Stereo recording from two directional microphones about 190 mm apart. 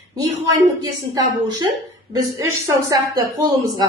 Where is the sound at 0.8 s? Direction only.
20° right (ahead or behind).